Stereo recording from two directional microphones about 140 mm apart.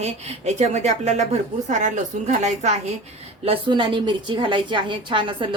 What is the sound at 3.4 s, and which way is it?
A woman's voice, 40° right (ahead or behind).